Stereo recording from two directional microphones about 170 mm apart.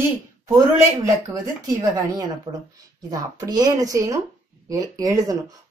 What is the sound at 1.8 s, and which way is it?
Speech, 20° right (ahead or behind).